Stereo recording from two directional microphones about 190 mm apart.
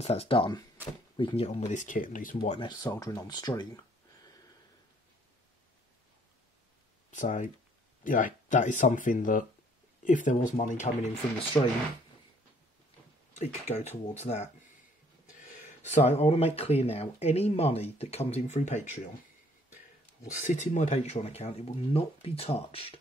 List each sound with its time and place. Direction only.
0.0 s speech: 30° left (ahead or behind)
2.5 s speech: 25° left (ahead or behind)
7.1 s speech: 40° left (ahead or behind)
13.3 s speech: 35° left (ahead or behind)
15.9 s speech: 35° left (ahead or behind)
20.3 s speech: 40° left (ahead or behind)